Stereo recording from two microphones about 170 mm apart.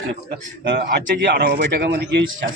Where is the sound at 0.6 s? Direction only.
75° right (ahead or behind).